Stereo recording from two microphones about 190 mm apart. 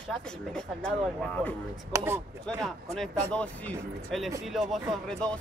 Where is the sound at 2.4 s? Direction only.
Centre (ahead or behind).